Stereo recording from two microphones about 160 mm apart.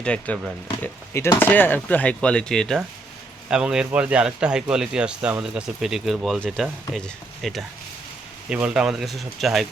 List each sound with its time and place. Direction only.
0.0 s speech: 5° left (ahead or behind)